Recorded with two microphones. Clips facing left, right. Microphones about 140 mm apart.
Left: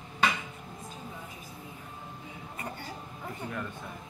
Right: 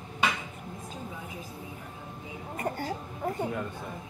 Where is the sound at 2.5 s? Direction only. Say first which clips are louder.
Right 9 dB; 45° right (ahead or behind).